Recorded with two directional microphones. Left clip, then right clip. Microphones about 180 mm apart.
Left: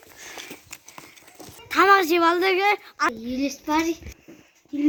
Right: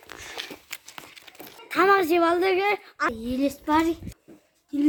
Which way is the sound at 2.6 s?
25° left (ahead or behind).